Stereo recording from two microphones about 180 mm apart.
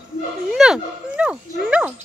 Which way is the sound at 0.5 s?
5° right (ahead or behind).